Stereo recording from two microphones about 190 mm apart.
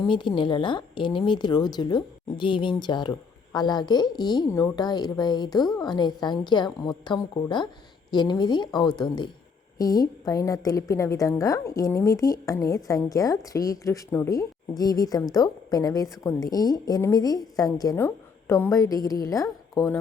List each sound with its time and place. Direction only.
0.0 s a woman's voice: 25° left (ahead or behind)